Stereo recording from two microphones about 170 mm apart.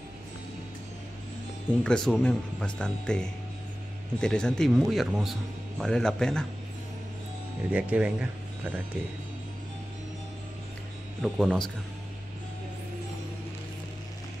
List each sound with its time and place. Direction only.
1.8 s a man's voice: 5° left (ahead or behind)
7.7 s speech: 5° right (ahead or behind)
11.2 s a man's voice: centre (ahead or behind)